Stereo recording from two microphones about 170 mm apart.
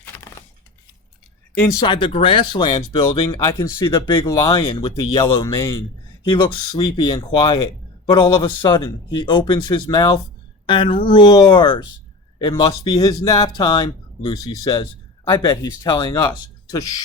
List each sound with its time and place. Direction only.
1.5 s speech: 25° left (ahead or behind)